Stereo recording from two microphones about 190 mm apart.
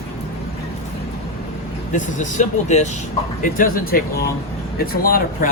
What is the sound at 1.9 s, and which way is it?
Speech, 40° left (ahead or behind).